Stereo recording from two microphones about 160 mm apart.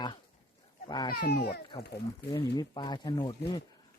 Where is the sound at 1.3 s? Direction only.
75° left (ahead or behind).